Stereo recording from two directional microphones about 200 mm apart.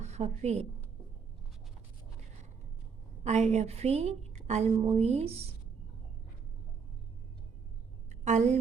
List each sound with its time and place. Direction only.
0.0 s a woman's voice: 35° right (ahead or behind)
3.2 s a woman's voice: 35° right (ahead or behind)
8.1 s a sound: 35° right (ahead or behind)